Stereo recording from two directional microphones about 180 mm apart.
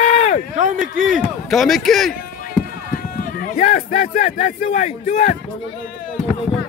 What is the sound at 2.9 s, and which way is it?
Speech, 50° left (ahead or behind).